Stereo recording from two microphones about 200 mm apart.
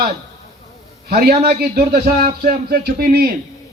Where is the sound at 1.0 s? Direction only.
50° right (ahead or behind).